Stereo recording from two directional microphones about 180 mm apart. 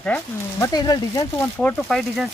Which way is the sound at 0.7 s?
20° left (ahead or behind).